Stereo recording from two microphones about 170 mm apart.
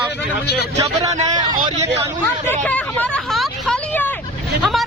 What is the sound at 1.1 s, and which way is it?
Speech, 45° right (ahead or behind).